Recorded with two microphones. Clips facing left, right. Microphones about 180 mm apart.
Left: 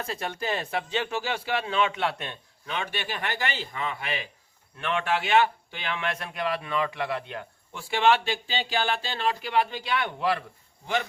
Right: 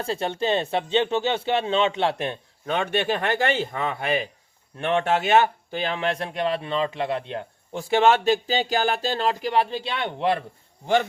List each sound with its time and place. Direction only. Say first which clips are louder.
0.0 s speech: right 6 dB; 30° right (ahead or behind)
2.6 s speech: right 9 dB; 50° right (ahead or behind)
4.8 s speech: right 5 dB; 30° right (ahead or behind)